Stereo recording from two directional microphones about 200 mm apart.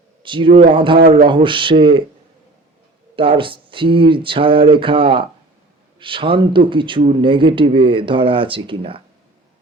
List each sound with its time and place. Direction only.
0.2 s speech: 25° right (ahead or behind)
3.2 s speech: 25° right (ahead or behind)